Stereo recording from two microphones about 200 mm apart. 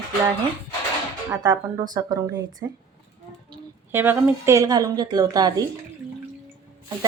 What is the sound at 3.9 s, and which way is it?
A woman's voice, 10° right (ahead or behind).